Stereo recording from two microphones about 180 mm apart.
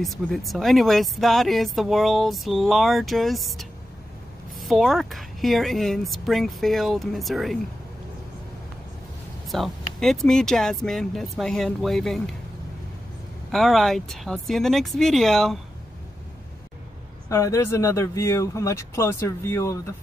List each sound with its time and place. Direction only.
0.0 s speech: centre (ahead or behind)
9.5 s speech: centre (ahead or behind)
13.5 s speech: centre (ahead or behind)
17.3 s speech: 15° left (ahead or behind)